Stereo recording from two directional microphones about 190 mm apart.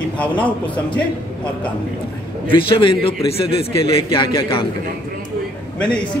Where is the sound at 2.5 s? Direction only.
25° left (ahead or behind).